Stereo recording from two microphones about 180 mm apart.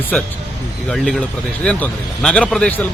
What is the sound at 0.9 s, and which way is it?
Speech, 5° left (ahead or behind).